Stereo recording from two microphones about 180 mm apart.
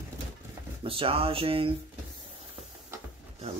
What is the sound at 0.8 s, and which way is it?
Speech, 30° right (ahead or behind).